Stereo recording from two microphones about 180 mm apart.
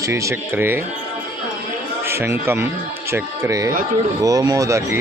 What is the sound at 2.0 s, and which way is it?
A man's voice, 15° right (ahead or behind).